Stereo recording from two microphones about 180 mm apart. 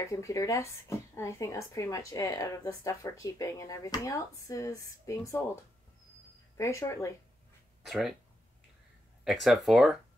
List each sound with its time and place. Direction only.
0.1 s speech: 20° left (ahead or behind)
6.5 s speech: 15° left (ahead or behind)
7.8 s speech: centre (ahead or behind)
9.2 s speech: centre (ahead or behind)